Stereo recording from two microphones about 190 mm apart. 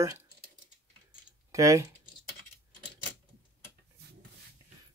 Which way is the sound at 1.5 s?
15° right (ahead or behind).